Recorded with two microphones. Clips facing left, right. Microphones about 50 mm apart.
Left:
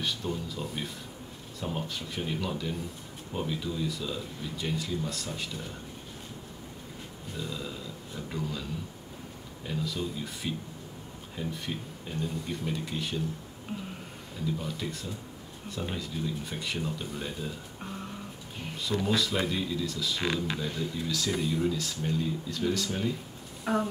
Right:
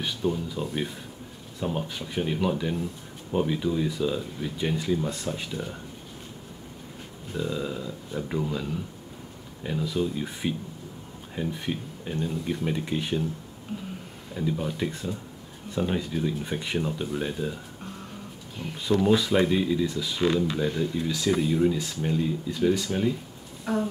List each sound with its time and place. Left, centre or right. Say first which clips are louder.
0.0 s speech: right 5 dB; centre
7.3 s speech: right 8 dB; centre
12.3 s speech: right 5 dB; centre
12.6 s speech: right 6 dB; right
14.3 s speech: right 5 dB; centre
18.9 s speech: right 7 dB; centre
21.4 s speech: right 5 dB; centre
21.6 s speech: right 5 dB; right
23.6 s a sound: right 1 dB; centre